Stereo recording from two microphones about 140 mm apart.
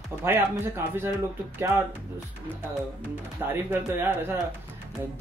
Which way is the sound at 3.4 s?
20° right (ahead or behind).